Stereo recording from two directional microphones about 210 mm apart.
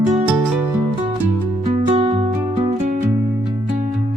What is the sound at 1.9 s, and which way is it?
Music, 25° right (ahead or behind).